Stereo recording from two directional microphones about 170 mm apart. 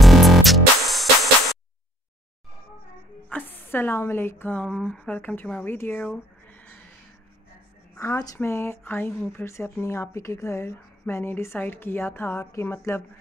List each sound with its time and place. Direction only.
0.0 s music: centre (ahead or behind)
3.3 s speech: 10° left (ahead or behind)
8.0 s speech: 20° left (ahead or behind)